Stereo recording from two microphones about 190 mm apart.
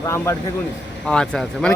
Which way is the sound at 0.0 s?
15° left (ahead or behind).